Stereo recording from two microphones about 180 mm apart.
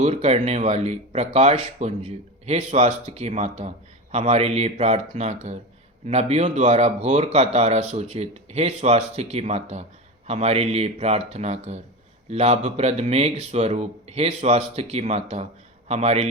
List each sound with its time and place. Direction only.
0.0 s speech: 35° right (ahead or behind)